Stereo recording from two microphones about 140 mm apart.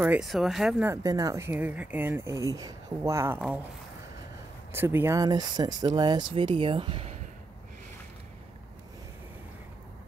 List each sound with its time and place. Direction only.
0.0 s speech: 10° right (ahead or behind)
0.8 s speech: 25° right (ahead or behind)
1.5 s speech: 10° right (ahead or behind)
4.7 s speech: 15° right (ahead or behind); by 7.2 s 45° right (ahead or behind)